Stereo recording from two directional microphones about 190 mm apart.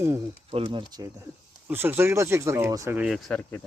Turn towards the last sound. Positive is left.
turn(degrees=0)  # may be behind; listen again after turning